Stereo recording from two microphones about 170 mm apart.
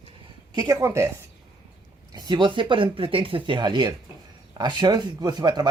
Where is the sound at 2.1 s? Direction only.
25° right (ahead or behind).